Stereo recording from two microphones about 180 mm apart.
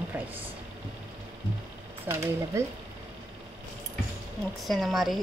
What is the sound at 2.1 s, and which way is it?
Speech, 15° right (ahead or behind).